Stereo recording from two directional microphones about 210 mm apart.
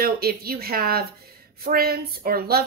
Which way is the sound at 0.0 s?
45° right (ahead or behind).